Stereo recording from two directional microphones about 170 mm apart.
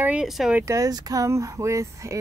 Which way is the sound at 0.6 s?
20° right (ahead or behind).